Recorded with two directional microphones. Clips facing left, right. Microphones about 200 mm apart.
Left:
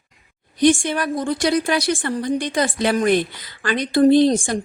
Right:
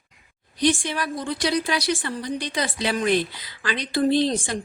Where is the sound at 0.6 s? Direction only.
50° left (ahead or behind).